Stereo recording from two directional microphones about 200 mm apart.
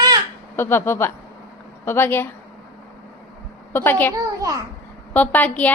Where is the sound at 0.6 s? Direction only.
10° left (ahead or behind).